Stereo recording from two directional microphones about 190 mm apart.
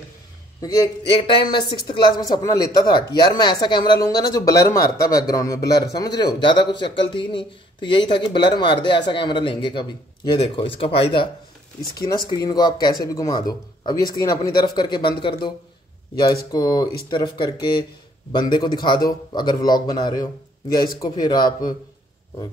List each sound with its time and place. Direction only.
0.6 s speech: 20° left (ahead or behind)
16.5 s speech: 20° left (ahead or behind)